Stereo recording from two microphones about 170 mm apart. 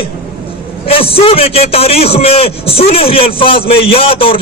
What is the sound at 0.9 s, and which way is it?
A man's voice, 35° left (ahead or behind).